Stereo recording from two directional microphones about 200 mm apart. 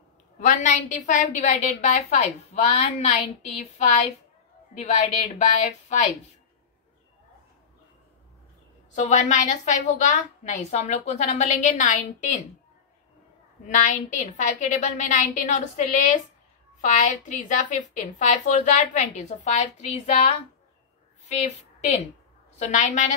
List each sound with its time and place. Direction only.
0.4 s a woman's voice: 35° left (ahead or behind)
8.9 s a woman's voice: 35° left (ahead or behind)
13.7 s a woman's voice: 40° left (ahead or behind)